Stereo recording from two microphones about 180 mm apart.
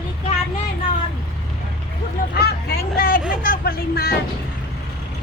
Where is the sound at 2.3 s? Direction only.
65° left (ahead or behind).